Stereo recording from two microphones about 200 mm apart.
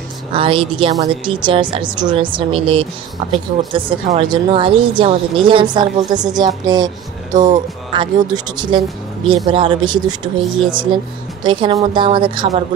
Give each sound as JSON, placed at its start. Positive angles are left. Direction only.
{"t": 0.3, "sound": "a woman's voice", "side_deg": -25}
{"t": 7.2, "sound": "speech", "side_deg": -40}
{"t": 7.9, "sound": "a woman's voice", "side_deg": -25}